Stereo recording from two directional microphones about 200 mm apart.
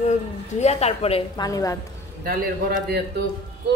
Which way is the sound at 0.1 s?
35° left (ahead or behind).